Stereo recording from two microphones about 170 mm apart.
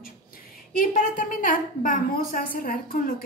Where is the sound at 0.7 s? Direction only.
55° left (ahead or behind).